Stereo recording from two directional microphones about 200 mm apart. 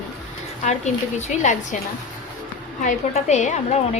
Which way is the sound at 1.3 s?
35° left (ahead or behind).